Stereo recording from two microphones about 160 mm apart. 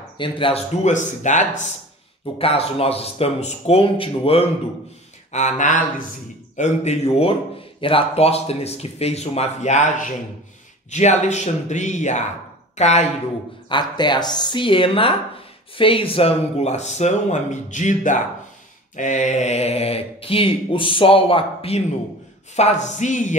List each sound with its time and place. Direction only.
0.2 s speech: 35° left (ahead or behind)
0.8 s speech: 50° left (ahead or behind)
2.3 s speech: 35° left (ahead or behind)
5.3 s speech: 50° left (ahead or behind)
13.7 s speech: 30° left (ahead or behind); by 23.3 s 50° left (ahead or behind)